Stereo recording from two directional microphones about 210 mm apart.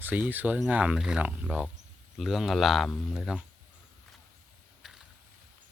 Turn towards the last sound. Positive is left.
turn(degrees=0)  # may be behind; listen again after turning